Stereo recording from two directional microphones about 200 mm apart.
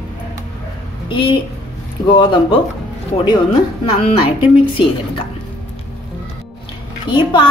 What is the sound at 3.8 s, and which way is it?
Speech, 25° left (ahead or behind).